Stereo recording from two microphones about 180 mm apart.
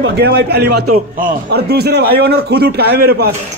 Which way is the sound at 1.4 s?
65° right (ahead or behind).